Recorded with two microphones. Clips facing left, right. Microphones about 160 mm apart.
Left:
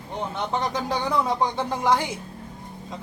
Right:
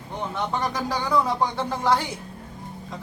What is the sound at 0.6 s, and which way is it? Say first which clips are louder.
Speech: left 1 dB; 20° left (ahead or behind).